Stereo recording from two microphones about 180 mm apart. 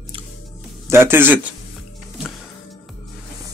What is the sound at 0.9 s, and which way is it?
Speech, 10° right (ahead or behind).